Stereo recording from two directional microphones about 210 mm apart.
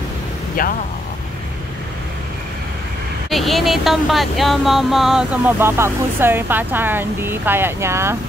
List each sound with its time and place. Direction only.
0.6 s speech: 40° left (ahead or behind)
3.3 s speech: centre (ahead or behind)